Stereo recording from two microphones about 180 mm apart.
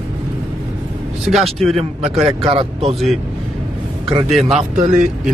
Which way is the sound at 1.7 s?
35° right (ahead or behind).